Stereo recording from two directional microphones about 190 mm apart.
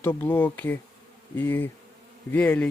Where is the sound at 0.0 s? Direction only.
10° left (ahead or behind).